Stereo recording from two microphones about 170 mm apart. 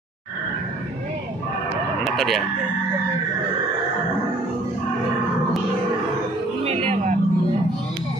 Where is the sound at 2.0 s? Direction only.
Centre (ahead or behind).